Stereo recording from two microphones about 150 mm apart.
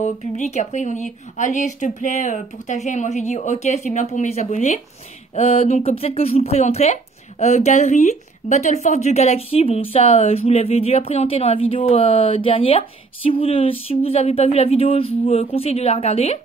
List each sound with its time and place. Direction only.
0.0 s speech: 50° left (ahead or behind)